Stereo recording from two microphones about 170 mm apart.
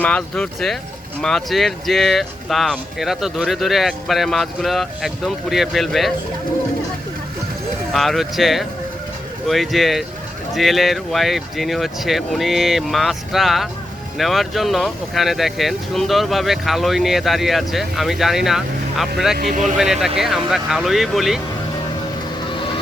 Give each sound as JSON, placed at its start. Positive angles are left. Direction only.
{"t": 0.0, "sound": "speech", "side_deg": 5}
{"t": 7.9, "sound": "speech", "side_deg": 0}
{"t": 19.4, "sound": "speech", "side_deg": -55}
{"t": 19.6, "sound": "speech", "side_deg": 0}